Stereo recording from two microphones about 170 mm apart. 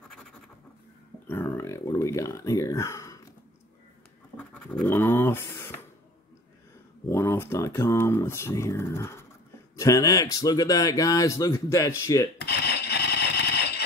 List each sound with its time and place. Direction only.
0.1 s scratch: 5° left (ahead or behind)
1.2 s speech: 10° left (ahead or behind)
4.4 s scratch: 5° left (ahead or behind)
7.1 s speech: 15° left (ahead or behind)
12.4 s a sound: 75° left (ahead or behind)